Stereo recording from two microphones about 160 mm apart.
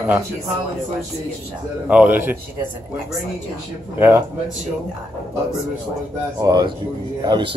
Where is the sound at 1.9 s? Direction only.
10° right (ahead or behind).